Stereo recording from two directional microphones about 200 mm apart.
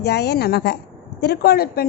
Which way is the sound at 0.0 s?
55° left (ahead or behind).